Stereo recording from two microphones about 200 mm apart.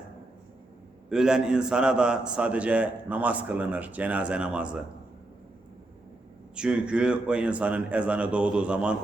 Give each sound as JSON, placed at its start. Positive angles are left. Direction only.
{"t": 1.1, "sound": "a man's voice", "side_deg": -5}
{"t": 6.6, "sound": "speech", "side_deg": -5}